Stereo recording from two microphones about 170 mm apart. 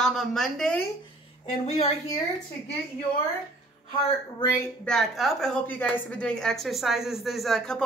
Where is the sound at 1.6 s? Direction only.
35° left (ahead or behind).